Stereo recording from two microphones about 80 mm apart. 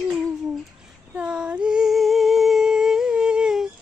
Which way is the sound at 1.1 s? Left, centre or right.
Centre.